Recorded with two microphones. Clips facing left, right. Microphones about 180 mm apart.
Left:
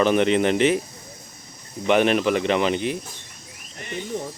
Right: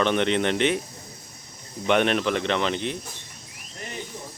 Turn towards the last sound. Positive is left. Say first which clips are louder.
# left 10 dB
turn(degrees=65)  # may be behind; listen again after turning